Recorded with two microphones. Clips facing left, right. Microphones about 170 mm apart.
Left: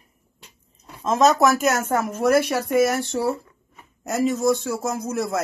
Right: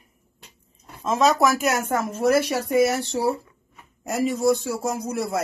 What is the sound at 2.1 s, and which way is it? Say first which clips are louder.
Speech: left 1 dB; 55° left (ahead or behind).